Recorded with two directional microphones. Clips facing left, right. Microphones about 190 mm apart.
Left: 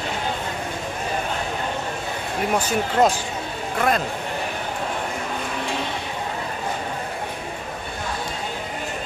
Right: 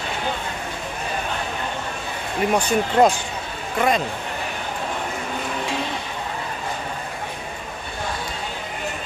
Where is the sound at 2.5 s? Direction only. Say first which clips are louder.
Right 3 dB; 5° left (ahead or behind).